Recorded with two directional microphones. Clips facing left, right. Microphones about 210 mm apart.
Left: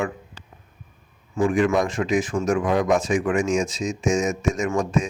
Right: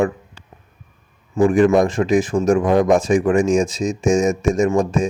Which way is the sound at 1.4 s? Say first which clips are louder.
Right 6 dB; 45° right (ahead or behind).